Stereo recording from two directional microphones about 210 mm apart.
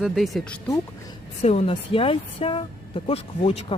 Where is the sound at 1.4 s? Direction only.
25° left (ahead or behind).